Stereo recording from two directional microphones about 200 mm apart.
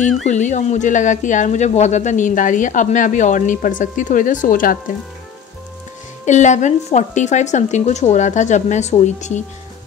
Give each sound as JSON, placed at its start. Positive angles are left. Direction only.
{"t": 0.3, "sound": "speech", "side_deg": 35}
{"t": 6.2, "sound": "speech", "side_deg": 35}